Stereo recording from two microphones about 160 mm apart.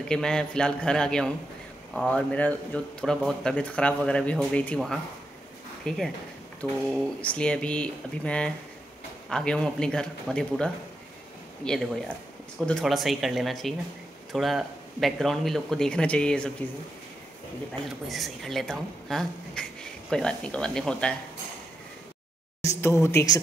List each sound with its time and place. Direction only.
0.1 s speech: 5° left (ahead or behind)
18.0 s speech: centre (ahead or behind)
22.6 s a woman's voice: 20° left (ahead or behind)